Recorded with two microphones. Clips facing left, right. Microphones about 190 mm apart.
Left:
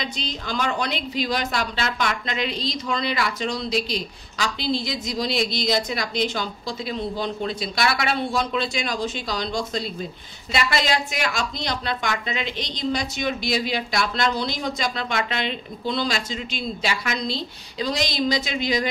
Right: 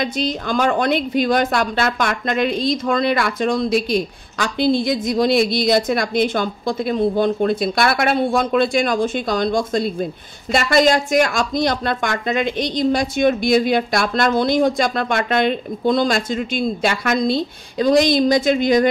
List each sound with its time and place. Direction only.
0.0 s a woman's voice: 50° right (ahead or behind)